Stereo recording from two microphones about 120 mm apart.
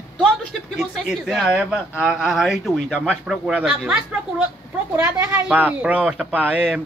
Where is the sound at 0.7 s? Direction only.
5° right (ahead or behind).